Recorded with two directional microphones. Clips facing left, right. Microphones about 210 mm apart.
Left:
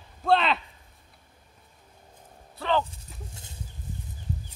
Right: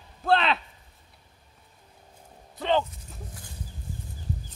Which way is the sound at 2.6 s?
20° right (ahead or behind).